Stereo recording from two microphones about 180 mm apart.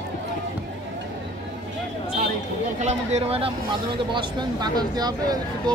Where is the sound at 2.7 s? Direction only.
40° right (ahead or behind).